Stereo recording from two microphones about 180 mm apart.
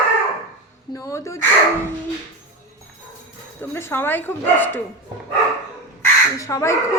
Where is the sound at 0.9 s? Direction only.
15° left (ahead or behind).